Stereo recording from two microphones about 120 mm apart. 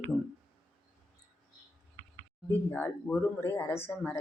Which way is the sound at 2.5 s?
15° left (ahead or behind).